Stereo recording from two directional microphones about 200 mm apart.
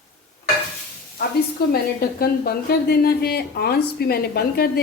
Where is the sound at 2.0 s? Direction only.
50° left (ahead or behind).